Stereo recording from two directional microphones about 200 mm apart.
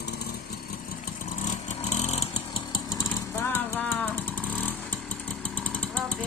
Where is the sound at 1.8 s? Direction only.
35° left (ahead or behind); by 3.9 s 10° left (ahead or behind).